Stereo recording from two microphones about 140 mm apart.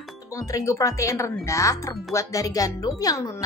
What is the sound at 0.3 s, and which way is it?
Speech, 25° left (ahead or behind).